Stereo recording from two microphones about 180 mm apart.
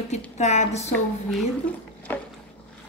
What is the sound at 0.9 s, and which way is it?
Speech, centre (ahead or behind).